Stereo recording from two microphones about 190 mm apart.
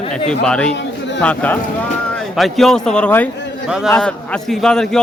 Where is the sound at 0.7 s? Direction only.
70° left (ahead or behind).